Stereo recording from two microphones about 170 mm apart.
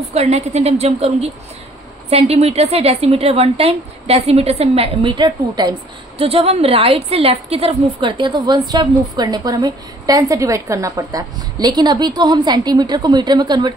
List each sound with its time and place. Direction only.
0.1 s a woman's voice: 40° right (ahead or behind)